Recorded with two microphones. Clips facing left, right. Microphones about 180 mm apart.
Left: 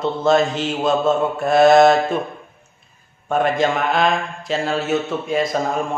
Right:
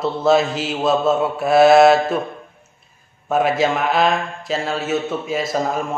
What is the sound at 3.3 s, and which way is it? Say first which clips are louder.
A man's voice: right 1 dB; 5° right (ahead or behind).